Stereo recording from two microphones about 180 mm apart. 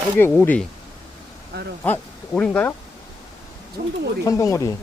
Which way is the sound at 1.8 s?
10° left (ahead or behind).